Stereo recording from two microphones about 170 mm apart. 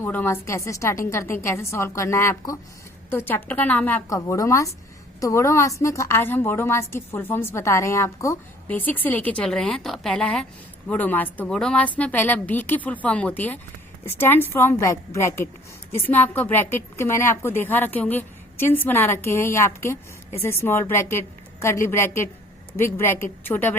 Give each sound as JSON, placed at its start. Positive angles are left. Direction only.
{"t": 0.0, "sound": "a woman's voice", "side_deg": 10}